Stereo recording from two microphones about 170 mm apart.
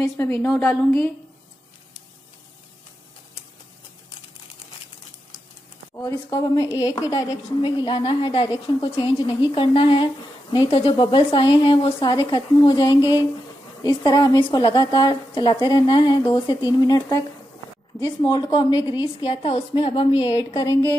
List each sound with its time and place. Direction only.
0.0 s a woman's voice: 15° left (ahead or behind)
5.9 s a woman's voice: 20° left (ahead or behind)
20.3 s a woman's voice: 20° left (ahead or behind)